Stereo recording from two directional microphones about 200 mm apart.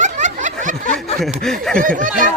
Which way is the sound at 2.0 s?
40° right (ahead or behind).